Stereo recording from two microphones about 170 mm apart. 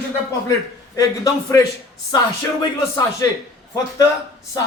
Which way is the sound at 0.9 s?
20° left (ahead or behind).